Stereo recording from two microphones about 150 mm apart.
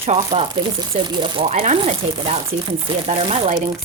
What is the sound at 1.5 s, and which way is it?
Speech, 50° right (ahead or behind).